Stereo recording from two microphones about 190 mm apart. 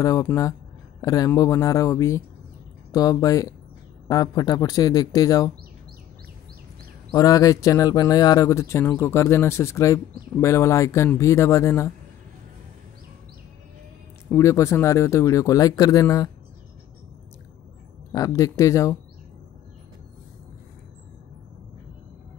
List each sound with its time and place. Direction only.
0.0 s speech: 15° left (ahead or behind)
7.1 s speech: 20° left (ahead or behind)
14.3 s speech: 15° left (ahead or behind)
18.1 s speech: 15° left (ahead or behind)